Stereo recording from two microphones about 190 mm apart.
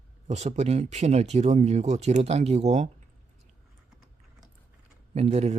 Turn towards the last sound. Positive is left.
turn(degrees=-35)  # may be behind; listen again after turning